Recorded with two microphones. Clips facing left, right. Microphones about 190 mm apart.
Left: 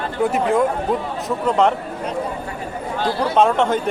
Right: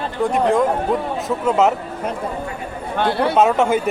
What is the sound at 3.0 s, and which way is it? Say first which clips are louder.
Speech: right 3 dB; 65° right (ahead or behind).